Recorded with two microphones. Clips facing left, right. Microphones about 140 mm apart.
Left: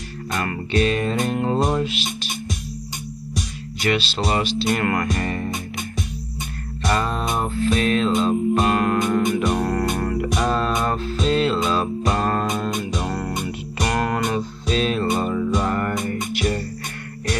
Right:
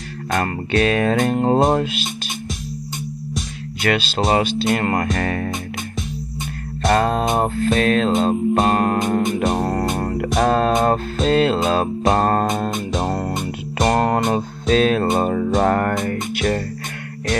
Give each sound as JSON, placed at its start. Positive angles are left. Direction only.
{"t": 0.3, "sound": "music", "side_deg": -50}
{"t": 3.8, "sound": "music", "side_deg": -50}
{"t": 5.1, "sound": "music", "side_deg": -60}
{"t": 6.8, "sound": "music", "side_deg": -50}
{"t": 9.6, "sound": "music", "side_deg": -30}
{"t": 10.2, "sound": "music", "side_deg": -50}